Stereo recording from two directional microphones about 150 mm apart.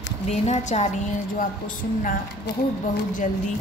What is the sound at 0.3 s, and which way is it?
Speech, 50° left (ahead or behind).